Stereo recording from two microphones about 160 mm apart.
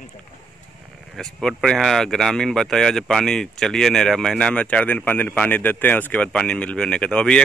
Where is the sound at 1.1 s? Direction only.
5° left (ahead or behind).